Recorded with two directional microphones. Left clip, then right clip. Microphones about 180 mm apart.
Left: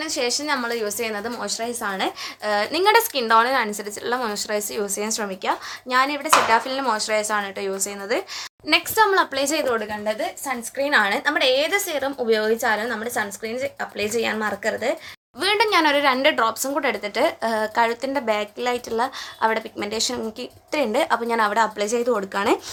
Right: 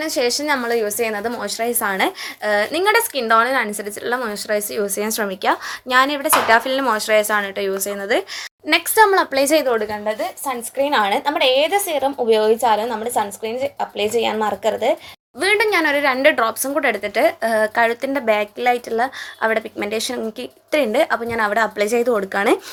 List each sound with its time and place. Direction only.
0.0 s speech: 30° right (ahead or behind)
2.4 s a woman's voice: 15° right (ahead or behind)
5.0 s speech: 30° right (ahead or behind)
10.1 s speech: 15° right (ahead or behind)
10.8 s a woman's voice: 10° right (ahead or behind)
16.2 s a woman's voice: 15° right (ahead or behind)